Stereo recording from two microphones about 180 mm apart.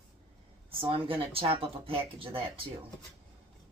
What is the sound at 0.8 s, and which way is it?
Speech, 30° right (ahead or behind).